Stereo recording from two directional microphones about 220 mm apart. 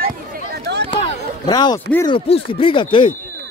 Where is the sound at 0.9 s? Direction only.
20° left (ahead or behind).